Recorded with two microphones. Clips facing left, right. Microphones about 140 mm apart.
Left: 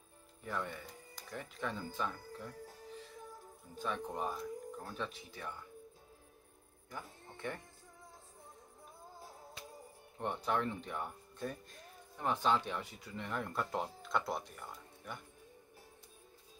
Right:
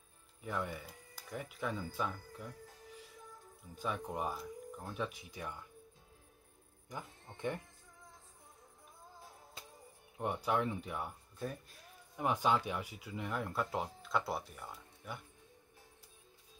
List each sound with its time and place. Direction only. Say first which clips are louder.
0.4 s speech: right 1 dB; 10° right (ahead or behind)
3.7 s speech: even; 10° right (ahead or behind)
6.9 s speech: right 1 dB; 15° right (ahead or behind)
10.1 s speech: right 1 dB; 10° right (ahead or behind)